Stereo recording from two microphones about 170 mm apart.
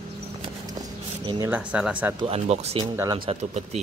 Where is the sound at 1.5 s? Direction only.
10° right (ahead or behind).